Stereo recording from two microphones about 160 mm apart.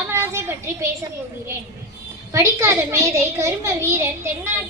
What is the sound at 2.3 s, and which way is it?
A woman's voice, 20° right (ahead or behind).